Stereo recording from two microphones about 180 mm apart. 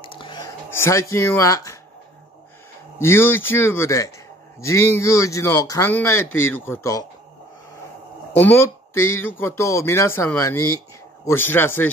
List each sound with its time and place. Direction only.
0.0 s a sound: 25° left (ahead or behind)
0.7 s a man's voice: 15° left (ahead or behind)
3.0 s a man's voice: 15° left (ahead or behind)
8.4 s a man's voice: 10° left (ahead or behind)